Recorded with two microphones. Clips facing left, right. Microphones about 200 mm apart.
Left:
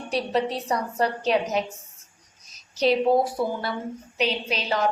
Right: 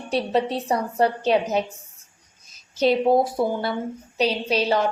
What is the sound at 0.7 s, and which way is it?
Speech, 30° right (ahead or behind).